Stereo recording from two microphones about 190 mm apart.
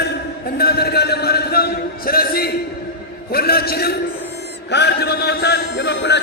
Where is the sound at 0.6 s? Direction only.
55° left (ahead or behind).